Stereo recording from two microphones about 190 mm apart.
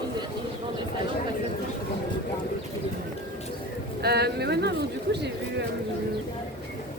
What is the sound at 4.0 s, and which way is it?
Speech, 55° right (ahead or behind).